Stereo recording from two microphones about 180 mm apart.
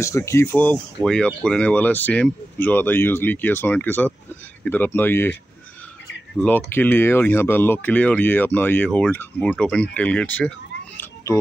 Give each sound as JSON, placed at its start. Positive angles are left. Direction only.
{"t": 0.0, "sound": "speech", "side_deg": 15}